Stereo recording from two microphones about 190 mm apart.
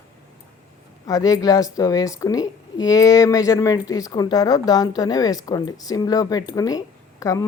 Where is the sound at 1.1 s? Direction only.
20° left (ahead or behind).